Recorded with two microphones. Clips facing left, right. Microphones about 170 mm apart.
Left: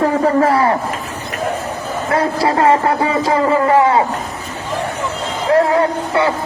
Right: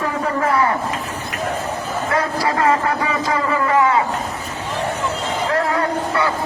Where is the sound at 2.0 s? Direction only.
30° left (ahead or behind).